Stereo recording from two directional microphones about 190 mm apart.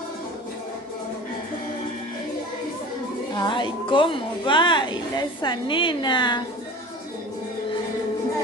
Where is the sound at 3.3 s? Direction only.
25° left (ahead or behind).